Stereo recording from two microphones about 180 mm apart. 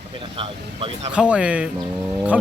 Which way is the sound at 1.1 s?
5° right (ahead or behind).